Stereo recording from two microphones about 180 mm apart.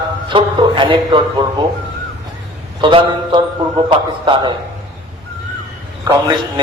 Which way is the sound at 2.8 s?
25° right (ahead or behind).